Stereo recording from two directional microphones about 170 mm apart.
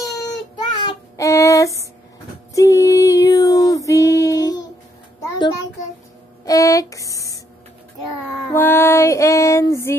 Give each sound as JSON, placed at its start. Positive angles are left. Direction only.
{"t": 0.6, "sound": "child singing", "side_deg": 20}
{"t": 2.5, "sound": "female singing", "side_deg": 20}
{"t": 5.2, "sound": "a sound", "side_deg": 20}
{"t": 8.5, "sound": "female singing", "side_deg": 15}